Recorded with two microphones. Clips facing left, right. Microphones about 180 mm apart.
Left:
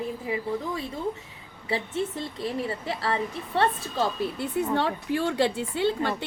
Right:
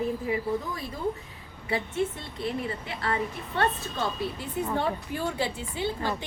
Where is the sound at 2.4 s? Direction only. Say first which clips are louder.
Even; 35° left (ahead or behind).